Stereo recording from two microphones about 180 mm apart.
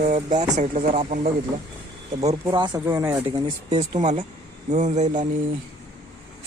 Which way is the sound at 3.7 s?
40° right (ahead or behind).